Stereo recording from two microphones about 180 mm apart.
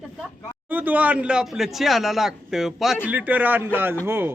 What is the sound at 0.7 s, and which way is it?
A woman's voice, 10° right (ahead or behind).